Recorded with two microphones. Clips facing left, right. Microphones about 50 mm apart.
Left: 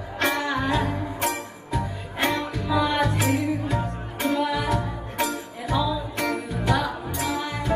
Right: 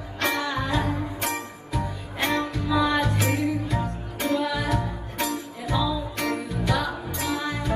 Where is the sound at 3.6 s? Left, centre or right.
Left.